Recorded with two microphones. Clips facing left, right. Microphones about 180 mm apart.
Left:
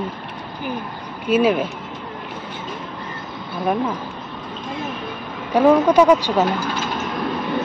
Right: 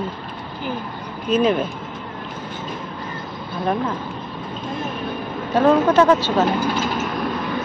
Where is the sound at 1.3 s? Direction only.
10° left (ahead or behind).